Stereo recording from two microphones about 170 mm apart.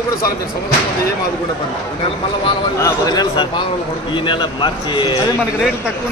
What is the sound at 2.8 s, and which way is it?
Speech, 20° left (ahead or behind).